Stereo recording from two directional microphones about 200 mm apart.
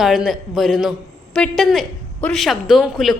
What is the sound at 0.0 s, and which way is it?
A man's voice, centre (ahead or behind).